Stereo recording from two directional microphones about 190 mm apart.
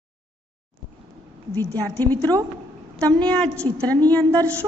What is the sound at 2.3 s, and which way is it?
Speech, 20° right (ahead or behind).